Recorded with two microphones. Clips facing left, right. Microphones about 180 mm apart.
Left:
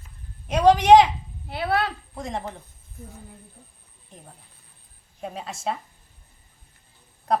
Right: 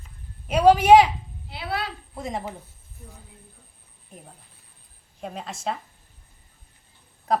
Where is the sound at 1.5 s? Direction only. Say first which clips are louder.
Left 6 dB; 55° left (ahead or behind).